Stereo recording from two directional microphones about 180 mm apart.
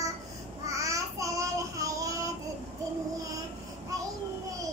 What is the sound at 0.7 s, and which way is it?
Child singing, 15° right (ahead or behind).